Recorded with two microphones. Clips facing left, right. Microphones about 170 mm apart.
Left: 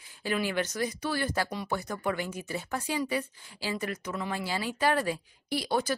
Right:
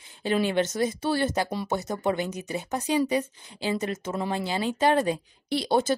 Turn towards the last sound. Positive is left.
turn(degrees=-25)  # may be behind; listen again after turning